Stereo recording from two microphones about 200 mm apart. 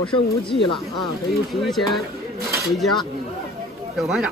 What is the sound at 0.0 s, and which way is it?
Speech, 25° left (ahead or behind).